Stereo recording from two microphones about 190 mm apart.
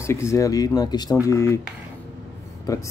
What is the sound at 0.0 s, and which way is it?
Speech, 15° left (ahead or behind).